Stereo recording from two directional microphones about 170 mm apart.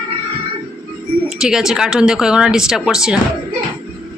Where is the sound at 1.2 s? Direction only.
5° right (ahead or behind).